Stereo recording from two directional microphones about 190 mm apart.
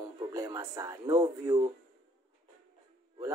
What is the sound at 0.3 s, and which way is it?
Speech, 20° right (ahead or behind).